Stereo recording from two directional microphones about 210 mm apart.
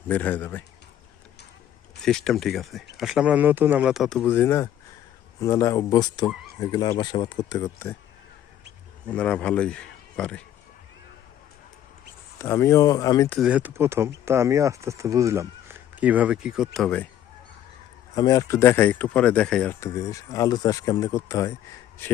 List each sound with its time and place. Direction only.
0.1 s speech: 10° left (ahead or behind)
2.0 s speech: 5° left (ahead or behind)
4.2 s speech: 10° left (ahead or behind)
9.0 s speech: 5° left (ahead or behind)
12.4 s speech: 15° left (ahead or behind)
13.4 s speech: 5° right (ahead or behind)
18.1 s speech: 15° left (ahead or behind)